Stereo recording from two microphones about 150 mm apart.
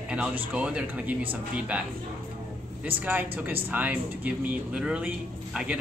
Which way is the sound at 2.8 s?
10° right (ahead or behind).